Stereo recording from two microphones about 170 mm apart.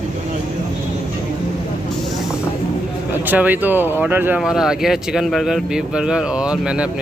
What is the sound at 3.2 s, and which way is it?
Speech, 10° right (ahead or behind).